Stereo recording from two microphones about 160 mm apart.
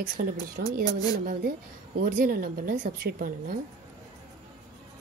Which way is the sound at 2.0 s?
65° right (ahead or behind).